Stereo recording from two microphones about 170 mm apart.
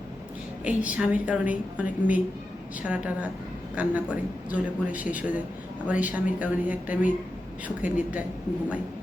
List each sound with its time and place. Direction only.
0.6 s a woman's voice: 10° right (ahead or behind)